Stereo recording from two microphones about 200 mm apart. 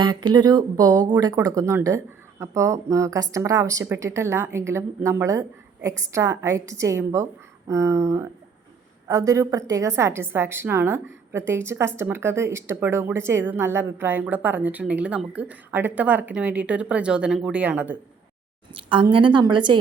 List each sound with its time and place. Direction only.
0.0 s a woman's voice: 20° right (ahead or behind)
18.7 s speech: 25° right (ahead or behind)